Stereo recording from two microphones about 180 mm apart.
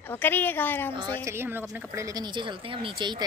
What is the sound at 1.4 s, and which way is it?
Speech, 10° right (ahead or behind).